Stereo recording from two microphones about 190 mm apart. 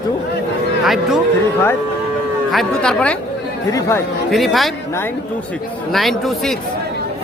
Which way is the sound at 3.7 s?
15° left (ahead or behind).